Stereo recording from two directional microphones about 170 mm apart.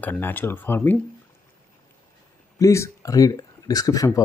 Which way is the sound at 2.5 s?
20° left (ahead or behind).